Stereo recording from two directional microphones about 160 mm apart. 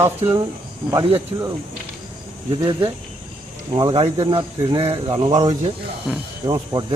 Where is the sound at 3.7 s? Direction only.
25° right (ahead or behind).